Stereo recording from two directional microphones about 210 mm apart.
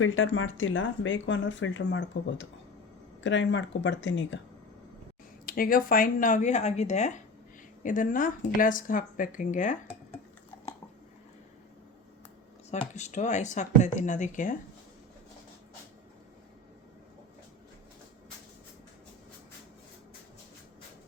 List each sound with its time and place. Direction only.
0.0 s speech: 65° left (ahead or behind)
5.5 s speech: 45° left (ahead or behind)
12.7 s speech: 35° left (ahead or behind)